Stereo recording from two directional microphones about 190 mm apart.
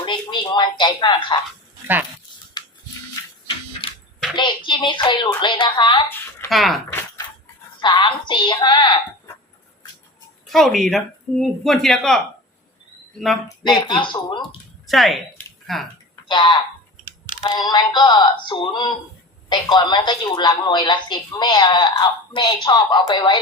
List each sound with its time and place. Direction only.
0.0 s speech: 25° left (ahead or behind)
2.6 s music: 20° left (ahead or behind)
4.4 s a woman's voice: 25° left (ahead or behind)
6.5 s speech: centre (ahead or behind)
7.8 s a woman's voice: 25° left (ahead or behind)
10.4 s speech: centre (ahead or behind)
13.7 s a woman's voice: 25° left (ahead or behind)
14.8 s speech: centre (ahead or behind)
16.3 s a woman's voice: 25° left (ahead or behind)